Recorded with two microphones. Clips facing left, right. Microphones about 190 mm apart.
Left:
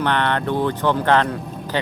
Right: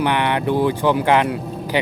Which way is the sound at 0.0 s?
10° right (ahead or behind).